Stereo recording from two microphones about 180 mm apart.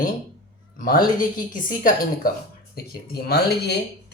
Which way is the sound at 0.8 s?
50° left (ahead or behind).